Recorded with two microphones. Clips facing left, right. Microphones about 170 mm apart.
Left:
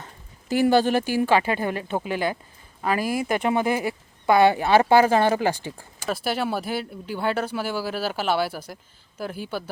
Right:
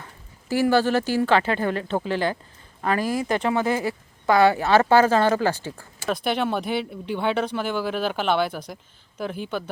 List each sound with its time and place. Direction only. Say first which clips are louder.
0.0 s speech: left 1 dB; 20° left (ahead or behind)
6.1 s speech: right 2 dB; 5° left (ahead or behind)